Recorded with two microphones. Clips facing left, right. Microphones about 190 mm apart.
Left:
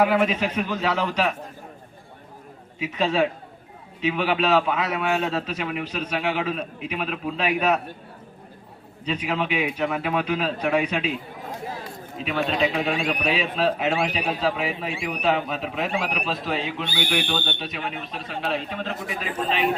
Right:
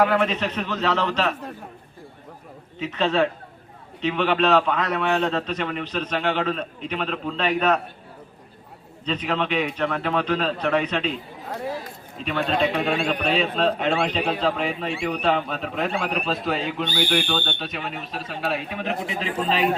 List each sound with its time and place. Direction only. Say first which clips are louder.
0.0 s a man's voice: even; 10° left (ahead or behind)
2.7 s a man's voice: right 1 dB; 10° left (ahead or behind)
9.0 s a man's voice: right 1 dB; 10° left (ahead or behind)
12.1 s a man's voice: right 1 dB; 5° left (ahead or behind)
18.9 s a man's voice: right 3 dB; 20° right (ahead or behind)